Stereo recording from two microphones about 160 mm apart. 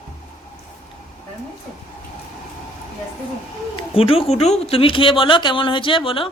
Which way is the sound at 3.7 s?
35° left (ahead or behind).